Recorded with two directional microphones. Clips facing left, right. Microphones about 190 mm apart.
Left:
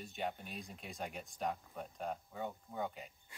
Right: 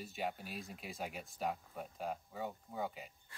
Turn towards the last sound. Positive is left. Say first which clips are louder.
# even
turn(degrees=0)  # may be behind; listen again after turning